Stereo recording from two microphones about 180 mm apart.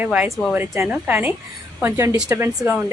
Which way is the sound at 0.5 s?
15° right (ahead or behind).